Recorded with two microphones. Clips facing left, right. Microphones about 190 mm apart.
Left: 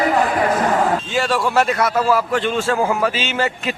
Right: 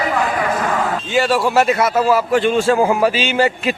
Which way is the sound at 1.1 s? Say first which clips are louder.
Right 5 dB; 5° right (ahead or behind).